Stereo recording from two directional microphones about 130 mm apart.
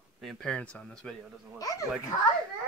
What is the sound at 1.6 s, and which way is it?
Speech, 30° left (ahead or behind).